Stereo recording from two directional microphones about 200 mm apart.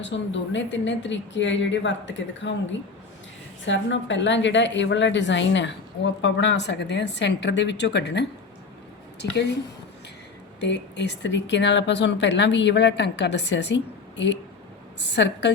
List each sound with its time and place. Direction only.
0.0 s speech: 65° left (ahead or behind)
3.7 s speech: 65° left (ahead or behind)
9.3 s speech: 60° left (ahead or behind)
10.6 s speech: 60° left (ahead or behind)